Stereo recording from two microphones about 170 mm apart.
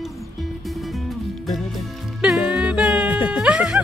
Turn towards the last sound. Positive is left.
turn(degrees=-5)  # may be behind; listen again after turning